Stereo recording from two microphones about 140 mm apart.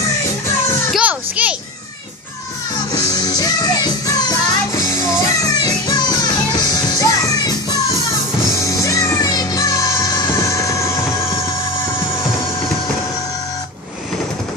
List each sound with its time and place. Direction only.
0.9 s children playing: 10° right (ahead or behind)
2.9 s music: 25° left (ahead or behind)